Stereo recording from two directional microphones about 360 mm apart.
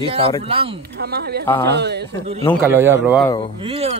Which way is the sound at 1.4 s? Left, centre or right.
Centre.